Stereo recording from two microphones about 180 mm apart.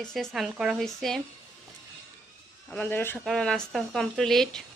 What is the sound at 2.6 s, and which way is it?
Speech, 10° left (ahead or behind).